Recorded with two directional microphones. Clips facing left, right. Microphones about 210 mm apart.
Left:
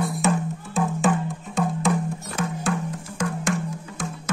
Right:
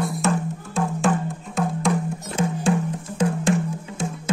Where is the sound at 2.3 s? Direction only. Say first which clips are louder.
Right 6 dB; 25° right (ahead or behind).